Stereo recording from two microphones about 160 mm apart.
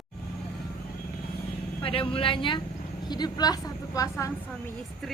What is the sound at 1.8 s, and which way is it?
Vehicle, 35° left (ahead or behind).